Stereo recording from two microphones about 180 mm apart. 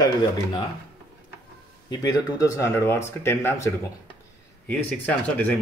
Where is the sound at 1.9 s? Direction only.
20° left (ahead or behind).